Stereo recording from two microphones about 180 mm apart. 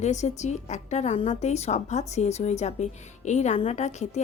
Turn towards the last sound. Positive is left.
turn(degrees=40)  # may be behind; listen again after turning